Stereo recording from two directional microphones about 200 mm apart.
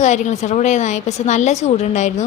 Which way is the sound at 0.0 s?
35° left (ahead or behind).